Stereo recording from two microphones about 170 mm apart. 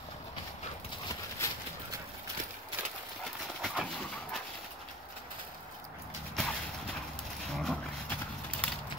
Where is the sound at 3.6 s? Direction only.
5° right (ahead or behind).